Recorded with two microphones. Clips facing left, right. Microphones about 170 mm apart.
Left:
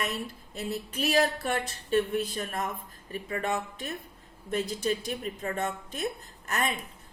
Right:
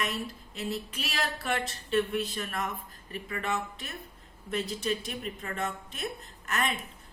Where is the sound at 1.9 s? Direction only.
40° left (ahead or behind).